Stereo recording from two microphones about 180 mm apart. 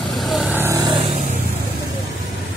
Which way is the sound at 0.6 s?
20° right (ahead or behind).